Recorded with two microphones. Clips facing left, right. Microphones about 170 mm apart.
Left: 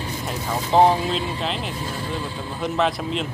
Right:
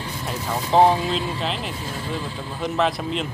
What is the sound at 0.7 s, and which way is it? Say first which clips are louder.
Speech: even; centre (ahead or behind).